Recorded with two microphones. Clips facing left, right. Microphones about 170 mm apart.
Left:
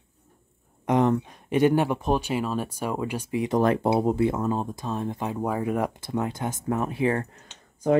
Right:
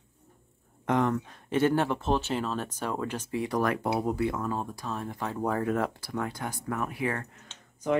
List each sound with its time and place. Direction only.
0.8 s speech: 20° left (ahead or behind)
5.9 s speech: 20° left (ahead or behind)